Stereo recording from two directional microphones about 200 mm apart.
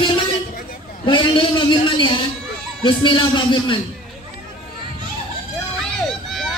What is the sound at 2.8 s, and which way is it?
Speech, 25° left (ahead or behind).